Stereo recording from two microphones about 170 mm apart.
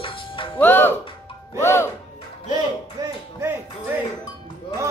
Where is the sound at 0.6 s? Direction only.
10° left (ahead or behind).